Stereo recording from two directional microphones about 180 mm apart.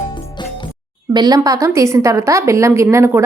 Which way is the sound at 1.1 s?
20° right (ahead or behind).